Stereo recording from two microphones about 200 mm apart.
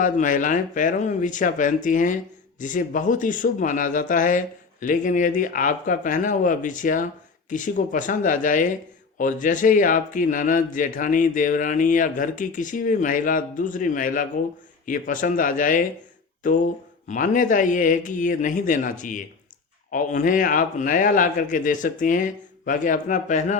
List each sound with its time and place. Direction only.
0.0 s a man's voice: 40° left (ahead or behind)
17.1 s a man's voice: 40° left (ahead or behind)